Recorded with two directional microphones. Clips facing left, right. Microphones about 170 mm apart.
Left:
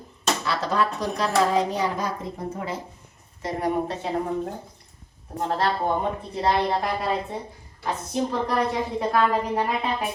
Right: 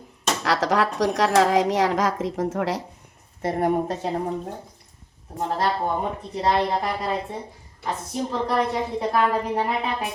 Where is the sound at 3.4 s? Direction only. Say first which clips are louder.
Right 3 dB; 55° right (ahead or behind).